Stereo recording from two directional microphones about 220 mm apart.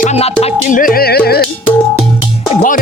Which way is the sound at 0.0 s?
30° left (ahead or behind).